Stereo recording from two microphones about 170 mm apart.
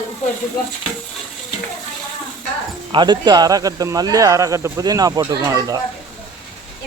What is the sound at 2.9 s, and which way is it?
Speech, 25° right (ahead or behind).